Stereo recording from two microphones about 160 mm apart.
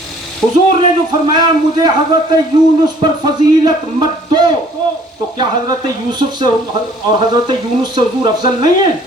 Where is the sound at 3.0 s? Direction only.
30° right (ahead or behind).